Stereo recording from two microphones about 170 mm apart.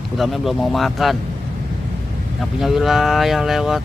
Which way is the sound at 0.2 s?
Centre (ahead or behind).